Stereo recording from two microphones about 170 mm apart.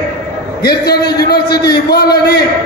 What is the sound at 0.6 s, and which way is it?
Speech, 65° left (ahead or behind).